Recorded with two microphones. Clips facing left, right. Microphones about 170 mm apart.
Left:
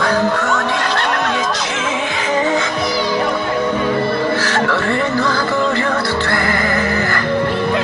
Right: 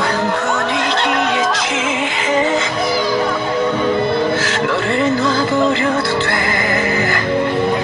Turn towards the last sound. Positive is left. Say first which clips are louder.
# right 1 dB
turn(degrees=-20)  # may be behind; listen again after turning